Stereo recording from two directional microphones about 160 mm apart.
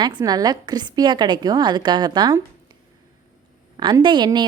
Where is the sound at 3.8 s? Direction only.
30° right (ahead or behind).